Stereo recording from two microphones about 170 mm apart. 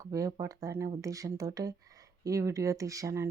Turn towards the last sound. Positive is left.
turn(degrees=-20)  # may be behind; listen again after turning